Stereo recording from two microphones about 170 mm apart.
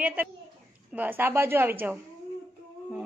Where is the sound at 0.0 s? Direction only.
10° right (ahead or behind).